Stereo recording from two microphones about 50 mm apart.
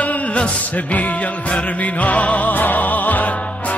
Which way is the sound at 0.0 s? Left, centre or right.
Left.